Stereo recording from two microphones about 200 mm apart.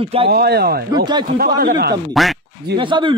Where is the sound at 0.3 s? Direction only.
50° right (ahead or behind).